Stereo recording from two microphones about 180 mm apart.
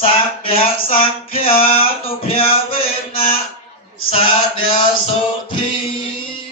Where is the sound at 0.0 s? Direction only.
30° left (ahead or behind).